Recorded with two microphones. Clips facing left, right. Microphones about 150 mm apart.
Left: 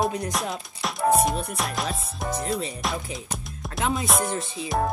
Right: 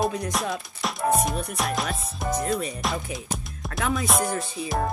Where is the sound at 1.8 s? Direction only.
25° left (ahead or behind).